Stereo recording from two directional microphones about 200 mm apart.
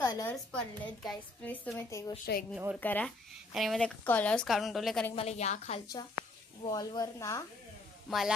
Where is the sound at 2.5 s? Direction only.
10° right (ahead or behind).